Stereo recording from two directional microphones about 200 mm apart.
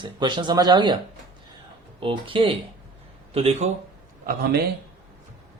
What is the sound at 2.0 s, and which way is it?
Speech, 25° right (ahead or behind).